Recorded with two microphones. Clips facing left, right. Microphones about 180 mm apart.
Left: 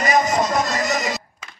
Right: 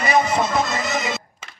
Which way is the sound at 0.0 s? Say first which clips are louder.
Even; 30° right (ahead or behind).